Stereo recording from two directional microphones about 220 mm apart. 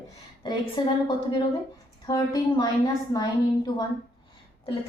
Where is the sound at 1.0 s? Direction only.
20° left (ahead or behind).